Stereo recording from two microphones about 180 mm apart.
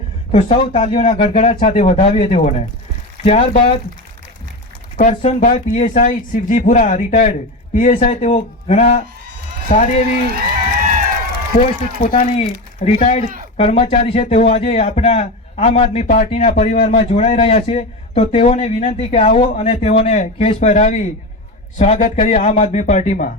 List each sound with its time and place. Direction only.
0.3 s speech: 40° left (ahead or behind)
4.9 s speech: 45° left (ahead or behind)
11.5 s speech: 40° left (ahead or behind)
16.5 s speech: 50° left (ahead or behind)
16.9 s speech: 30° left (ahead or behind)